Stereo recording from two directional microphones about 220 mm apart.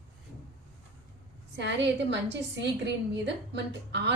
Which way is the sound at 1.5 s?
55° right (ahead or behind).